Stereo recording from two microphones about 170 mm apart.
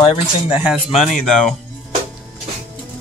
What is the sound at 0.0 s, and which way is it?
Speech, 30° left (ahead or behind).